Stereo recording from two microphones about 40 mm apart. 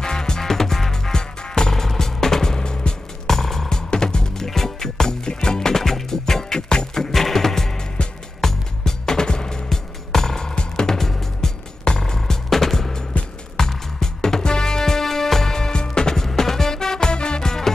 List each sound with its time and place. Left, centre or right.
0.0 s music: centre